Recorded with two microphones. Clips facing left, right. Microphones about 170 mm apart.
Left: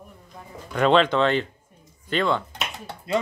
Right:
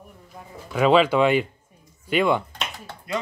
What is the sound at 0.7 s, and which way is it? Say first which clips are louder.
Speech: right 1 dB; 5° right (ahead or behind).